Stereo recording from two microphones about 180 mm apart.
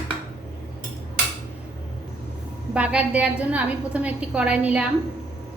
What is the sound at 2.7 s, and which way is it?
A woman's voice, 5° right (ahead or behind).